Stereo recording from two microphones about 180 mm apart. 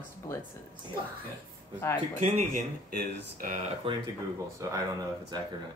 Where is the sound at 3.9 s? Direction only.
30° right (ahead or behind).